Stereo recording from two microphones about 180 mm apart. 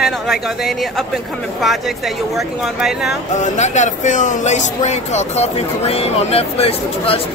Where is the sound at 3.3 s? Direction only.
40° left (ahead or behind).